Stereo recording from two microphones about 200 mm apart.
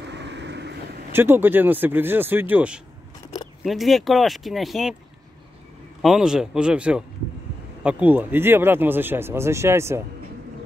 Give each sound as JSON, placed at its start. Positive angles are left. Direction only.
{"t": 0.0, "sound": "boat", "side_deg": -60}
{"t": 1.1, "sound": "speech", "side_deg": -10}
{"t": 6.0, "sound": "speech", "side_deg": -5}